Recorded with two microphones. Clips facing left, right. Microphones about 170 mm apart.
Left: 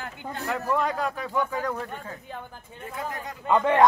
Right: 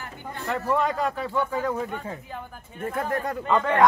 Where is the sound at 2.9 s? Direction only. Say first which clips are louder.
Right 7 dB; 55° right (ahead or behind).